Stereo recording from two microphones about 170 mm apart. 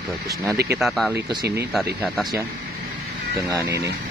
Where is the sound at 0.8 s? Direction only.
Centre (ahead or behind).